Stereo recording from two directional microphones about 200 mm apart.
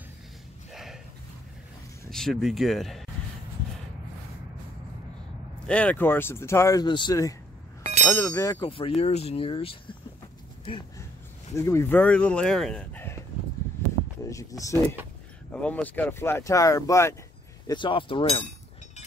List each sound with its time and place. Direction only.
2.0 s speech: centre (ahead or behind)
5.7 s speech: 5° left (ahead or behind); by 9.8 s 25° left (ahead or behind)
11.5 s speech: 15° left (ahead or behind)
14.3 s speech: 15° left (ahead or behind)